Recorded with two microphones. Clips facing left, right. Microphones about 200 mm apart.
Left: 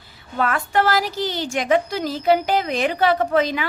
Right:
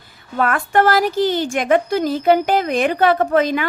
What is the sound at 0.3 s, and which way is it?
Speech, 55° right (ahead or behind).